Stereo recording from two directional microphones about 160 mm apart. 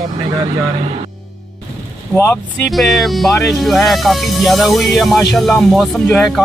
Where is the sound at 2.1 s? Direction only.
10° left (ahead or behind).